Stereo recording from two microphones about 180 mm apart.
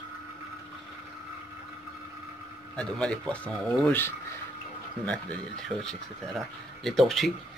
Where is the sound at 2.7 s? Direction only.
5° left (ahead or behind).